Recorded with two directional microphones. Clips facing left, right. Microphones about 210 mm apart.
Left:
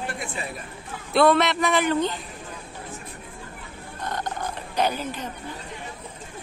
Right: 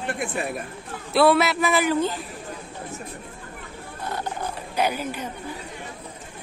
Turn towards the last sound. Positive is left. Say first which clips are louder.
# even
turn(degrees=-10)  # may be behind; listen again after turning